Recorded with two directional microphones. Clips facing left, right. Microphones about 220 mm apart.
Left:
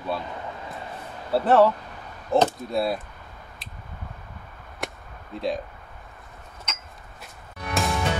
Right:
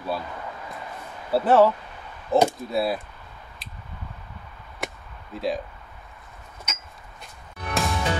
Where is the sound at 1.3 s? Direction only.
Centre (ahead or behind).